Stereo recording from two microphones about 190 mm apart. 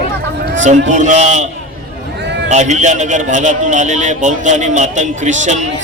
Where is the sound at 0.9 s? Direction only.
40° right (ahead or behind).